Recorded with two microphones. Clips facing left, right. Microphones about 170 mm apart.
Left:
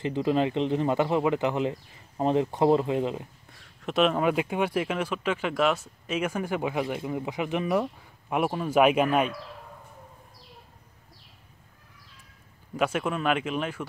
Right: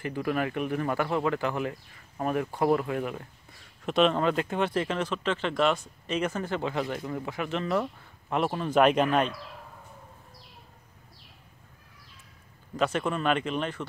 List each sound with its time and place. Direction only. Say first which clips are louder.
0.0 s speech: left 4 dB; 20° left (ahead or behind)
3.5 s speech: even; centre (ahead or behind)
12.7 s speech: left 1 dB; 10° left (ahead or behind)